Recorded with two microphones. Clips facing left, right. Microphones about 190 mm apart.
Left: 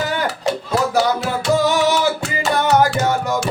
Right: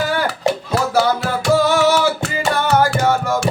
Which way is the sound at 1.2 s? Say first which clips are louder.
Right 1 dB; 20° left (ahead or behind).